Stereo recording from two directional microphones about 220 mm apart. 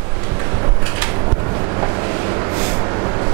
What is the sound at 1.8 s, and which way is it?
Vehicle, 20° right (ahead or behind).